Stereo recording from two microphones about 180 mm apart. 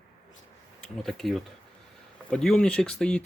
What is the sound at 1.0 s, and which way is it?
Speech, centre (ahead or behind).